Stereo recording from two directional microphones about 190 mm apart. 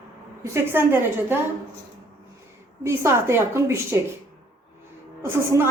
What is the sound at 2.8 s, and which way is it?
A woman's voice, 15° right (ahead or behind).